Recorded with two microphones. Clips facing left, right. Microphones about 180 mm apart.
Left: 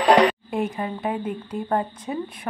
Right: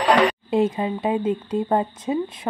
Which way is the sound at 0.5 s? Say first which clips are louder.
Right 5 dB; 25° right (ahead or behind).